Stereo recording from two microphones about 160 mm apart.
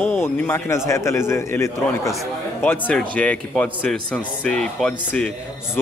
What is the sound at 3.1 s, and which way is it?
Speech, 10° left (ahead or behind).